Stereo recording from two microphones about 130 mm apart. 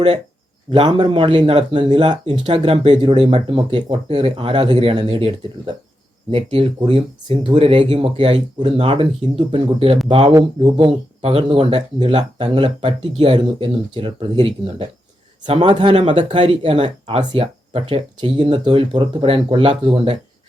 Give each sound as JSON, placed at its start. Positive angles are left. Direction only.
{"t": 0.7, "sound": "speech", "side_deg": -40}